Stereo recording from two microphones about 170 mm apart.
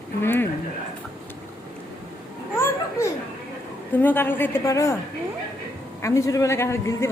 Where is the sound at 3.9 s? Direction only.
10° left (ahead or behind).